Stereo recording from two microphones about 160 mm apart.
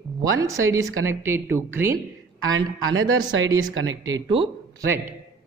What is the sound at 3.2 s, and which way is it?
Speech, 25° right (ahead or behind).